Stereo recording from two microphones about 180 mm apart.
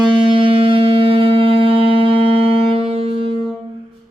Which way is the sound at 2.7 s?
30° right (ahead or behind).